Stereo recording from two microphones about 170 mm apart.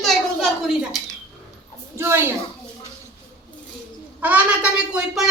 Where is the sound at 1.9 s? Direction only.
15° right (ahead or behind).